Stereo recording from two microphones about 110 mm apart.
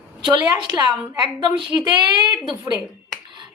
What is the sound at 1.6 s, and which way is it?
Speech, 40° right (ahead or behind).